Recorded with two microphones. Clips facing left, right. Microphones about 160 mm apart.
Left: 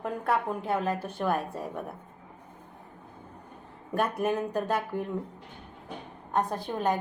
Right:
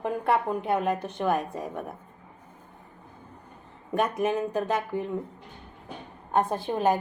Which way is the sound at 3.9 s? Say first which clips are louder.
Right 2 dB; 10° left (ahead or behind).